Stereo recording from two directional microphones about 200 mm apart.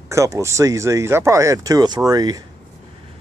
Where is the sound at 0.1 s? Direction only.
15° right (ahead or behind).